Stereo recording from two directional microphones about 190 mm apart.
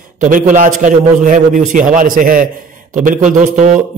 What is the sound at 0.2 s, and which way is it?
A man's voice, 45° right (ahead or behind).